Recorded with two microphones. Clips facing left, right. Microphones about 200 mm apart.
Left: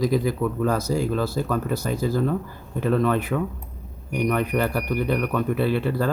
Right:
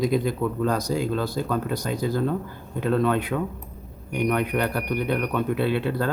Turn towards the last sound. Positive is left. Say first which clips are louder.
# left 1 dB
turn(degrees=5)  # may be behind; listen again after turning